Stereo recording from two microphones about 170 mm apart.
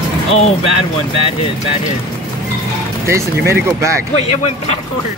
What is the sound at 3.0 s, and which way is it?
Speech, 15° right (ahead or behind).